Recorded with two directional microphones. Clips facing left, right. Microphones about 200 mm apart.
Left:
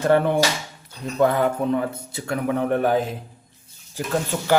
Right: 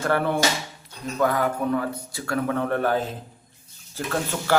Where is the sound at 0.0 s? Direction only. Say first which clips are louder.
Left 4 dB; 20° left (ahead or behind).